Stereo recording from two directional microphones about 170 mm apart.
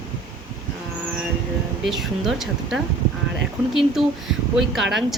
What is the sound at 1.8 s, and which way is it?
Speech, centre (ahead or behind).